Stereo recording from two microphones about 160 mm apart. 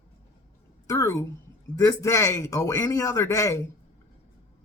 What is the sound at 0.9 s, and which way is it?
A man's voice, 20° left (ahead or behind).